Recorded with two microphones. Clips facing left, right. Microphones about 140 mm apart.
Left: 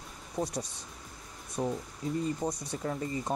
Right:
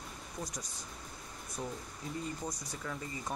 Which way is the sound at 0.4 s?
30° left (ahead or behind).